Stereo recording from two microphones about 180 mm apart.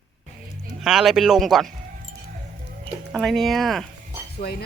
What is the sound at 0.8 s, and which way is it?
Speech, centre (ahead or behind).